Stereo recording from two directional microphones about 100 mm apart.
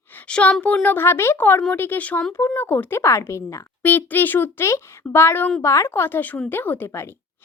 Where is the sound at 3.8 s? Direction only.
20° left (ahead or behind).